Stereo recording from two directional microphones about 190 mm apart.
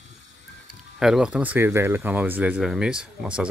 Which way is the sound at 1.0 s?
5° right (ahead or behind).